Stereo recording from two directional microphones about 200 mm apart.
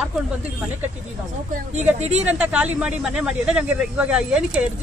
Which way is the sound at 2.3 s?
5° right (ahead or behind).